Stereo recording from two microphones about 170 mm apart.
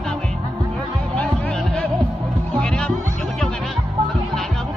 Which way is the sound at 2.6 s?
5° left (ahead or behind).